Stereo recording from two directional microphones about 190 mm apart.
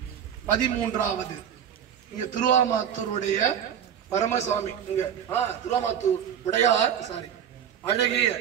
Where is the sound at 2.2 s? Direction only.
40° left (ahead or behind).